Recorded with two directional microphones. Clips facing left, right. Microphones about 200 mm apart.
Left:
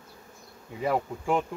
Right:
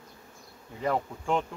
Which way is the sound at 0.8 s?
10° left (ahead or behind).